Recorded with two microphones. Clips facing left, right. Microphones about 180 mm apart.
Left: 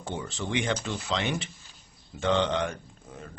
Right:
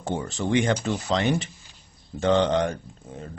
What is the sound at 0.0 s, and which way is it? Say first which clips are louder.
Speech: right 6 dB; 45° right (ahead or behind).